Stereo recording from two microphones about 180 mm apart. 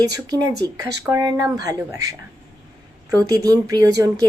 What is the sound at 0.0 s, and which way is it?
Speech, 20° right (ahead or behind).